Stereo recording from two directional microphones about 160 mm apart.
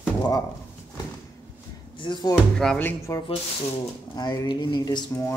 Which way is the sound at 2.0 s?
30° left (ahead or behind).